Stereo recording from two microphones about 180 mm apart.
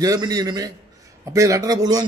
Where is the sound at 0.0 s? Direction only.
20° right (ahead or behind).